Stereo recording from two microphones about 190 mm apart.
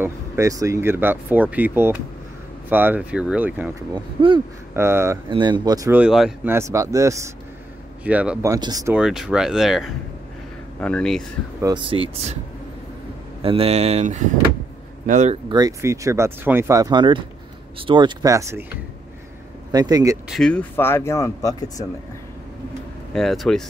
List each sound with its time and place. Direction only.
0.0 s speech: 15° right (ahead or behind)
3.9 s speech: 25° right (ahead or behind)
4.7 s speech: 15° right (ahead or behind)
5.3 s speech: 25° right (ahead or behind); by 6.5 s 5° right (ahead or behind)
6.5 s speech: 15° right (ahead or behind)
8.9 s speech: 5° right (ahead or behind)
11.6 s speech: 25° right (ahead or behind)
13.4 s speech: 30° right (ahead or behind)
15.5 s speech: 20° right (ahead or behind)
19.7 s speech: 20° right (ahead or behind)
20.2 s speech: centre (ahead or behind); by 21.8 s 20° left (ahead or behind)
23.1 s speech: centre (ahead or behind)